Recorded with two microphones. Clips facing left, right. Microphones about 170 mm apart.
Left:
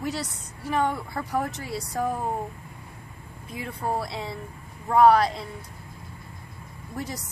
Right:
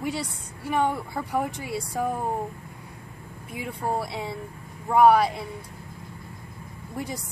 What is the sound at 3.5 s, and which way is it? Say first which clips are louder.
A woman's voice: right 1 dB; 5° right (ahead or behind).